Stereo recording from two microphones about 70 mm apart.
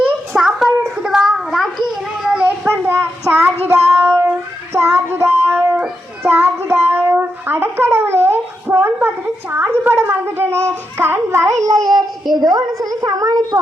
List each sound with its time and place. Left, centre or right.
0.3 s a sound: centre
1.0 s child singing: centre
2.6 s child singing: right
5.1 s music: right
6.2 s child singing: centre
6.7 s a sound: right
11.5 s a child's voice: right